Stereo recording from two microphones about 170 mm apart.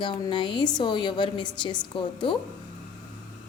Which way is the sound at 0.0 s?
30° left (ahead or behind).